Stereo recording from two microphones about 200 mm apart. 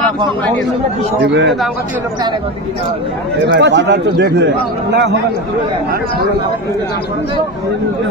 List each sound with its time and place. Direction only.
1.2 s speech: 60° right (ahead or behind)
3.4 s speech: 60° right (ahead or behind)